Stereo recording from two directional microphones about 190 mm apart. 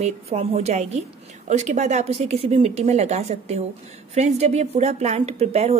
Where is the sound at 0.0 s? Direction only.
35° right (ahead or behind).